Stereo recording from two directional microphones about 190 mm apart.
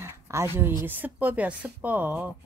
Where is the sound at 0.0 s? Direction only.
15° right (ahead or behind).